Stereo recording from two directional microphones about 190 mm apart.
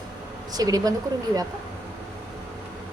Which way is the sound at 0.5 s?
20° right (ahead or behind).